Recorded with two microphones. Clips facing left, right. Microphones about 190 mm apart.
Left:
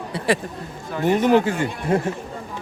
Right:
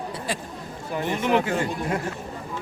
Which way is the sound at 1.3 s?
30° left (ahead or behind).